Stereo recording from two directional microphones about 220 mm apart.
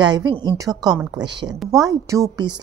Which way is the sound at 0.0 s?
20° right (ahead or behind).